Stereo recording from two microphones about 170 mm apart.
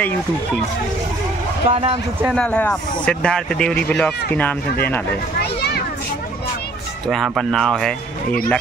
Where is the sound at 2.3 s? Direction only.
5° left (ahead or behind).